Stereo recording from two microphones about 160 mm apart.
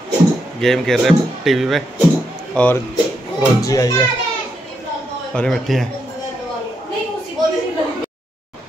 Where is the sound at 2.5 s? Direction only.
10° left (ahead or behind).